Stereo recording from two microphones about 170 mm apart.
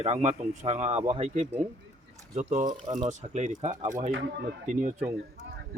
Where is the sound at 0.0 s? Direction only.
40° right (ahead or behind).